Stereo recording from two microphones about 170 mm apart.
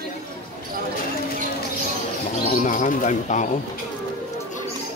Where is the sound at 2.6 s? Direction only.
50° left (ahead or behind).